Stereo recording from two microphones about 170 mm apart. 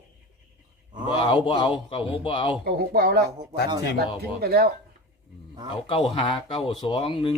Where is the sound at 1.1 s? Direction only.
30° left (ahead or behind).